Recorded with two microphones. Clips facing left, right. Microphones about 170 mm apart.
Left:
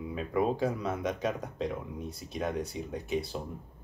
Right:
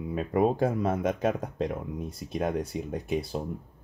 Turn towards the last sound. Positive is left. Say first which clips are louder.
# right 3 dB
turn(degrees=-50)  # may be behind; listen again after turning